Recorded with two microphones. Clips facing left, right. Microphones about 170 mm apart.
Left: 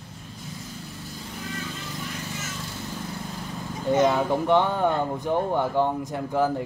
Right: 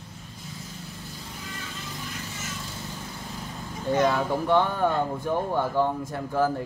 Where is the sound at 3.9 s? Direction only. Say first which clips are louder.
Left 2 dB; 20° left (ahead or behind).